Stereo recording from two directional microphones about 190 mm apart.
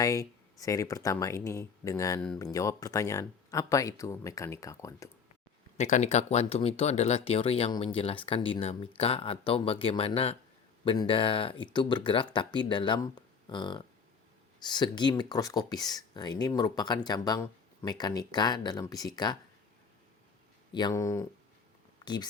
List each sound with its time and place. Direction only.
0.0 s speech: 15° left (ahead or behind)
5.7 s speech: 40° left (ahead or behind); by 19.4 s 20° left (ahead or behind)
20.7 s speech: 20° left (ahead or behind)